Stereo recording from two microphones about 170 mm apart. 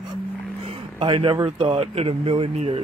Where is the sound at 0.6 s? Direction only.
30° right (ahead or behind).